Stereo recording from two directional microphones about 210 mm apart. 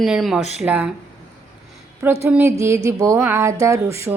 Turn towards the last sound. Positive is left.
turn(degrees=-15)  # may be behind; listen again after turning